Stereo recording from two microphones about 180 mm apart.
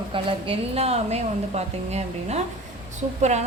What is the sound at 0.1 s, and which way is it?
A woman's voice, 30° right (ahead or behind).